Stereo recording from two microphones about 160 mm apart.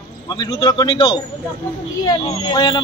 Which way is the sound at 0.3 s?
25° left (ahead or behind).